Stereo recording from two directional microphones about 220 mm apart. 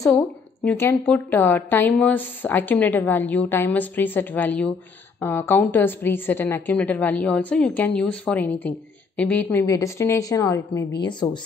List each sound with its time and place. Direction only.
0.7 s a woman's voice: 10° left (ahead or behind)